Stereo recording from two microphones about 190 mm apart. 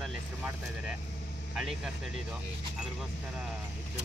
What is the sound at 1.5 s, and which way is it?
Speech, centre (ahead or behind).